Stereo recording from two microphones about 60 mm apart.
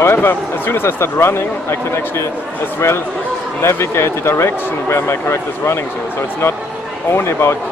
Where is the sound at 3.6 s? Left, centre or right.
Left.